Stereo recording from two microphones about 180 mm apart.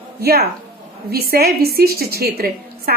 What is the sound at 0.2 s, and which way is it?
Speech, 60° right (ahead or behind).